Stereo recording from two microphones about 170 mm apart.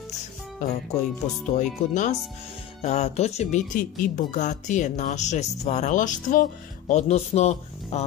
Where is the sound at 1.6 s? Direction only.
45° left (ahead or behind).